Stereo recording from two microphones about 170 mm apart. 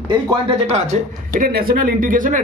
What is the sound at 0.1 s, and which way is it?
Speech, 25° right (ahead or behind).